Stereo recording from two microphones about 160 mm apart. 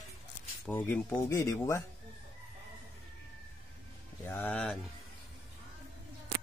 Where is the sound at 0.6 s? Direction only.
10° left (ahead or behind).